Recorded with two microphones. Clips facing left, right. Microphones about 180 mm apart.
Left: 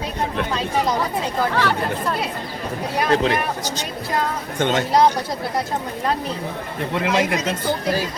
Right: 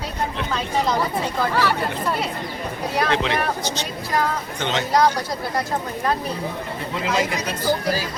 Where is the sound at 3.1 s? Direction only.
40° left (ahead or behind).